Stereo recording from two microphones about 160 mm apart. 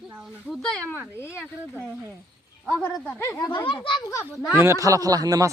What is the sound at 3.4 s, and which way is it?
Speech, 30° left (ahead or behind).